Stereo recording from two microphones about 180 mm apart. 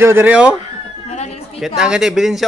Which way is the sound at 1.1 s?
35° left (ahead or behind).